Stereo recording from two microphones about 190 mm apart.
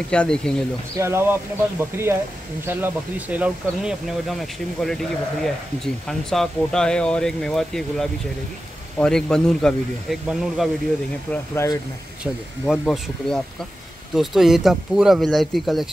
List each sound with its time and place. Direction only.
0.1 s speech: 5° left (ahead or behind)
0.9 s speech: 15° right (ahead or behind)
11.5 s speech: 15° left (ahead or behind)
12.2 s speech: centre (ahead or behind)